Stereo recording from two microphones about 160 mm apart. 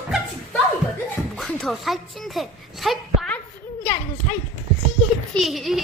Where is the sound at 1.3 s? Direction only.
5° left (ahead or behind).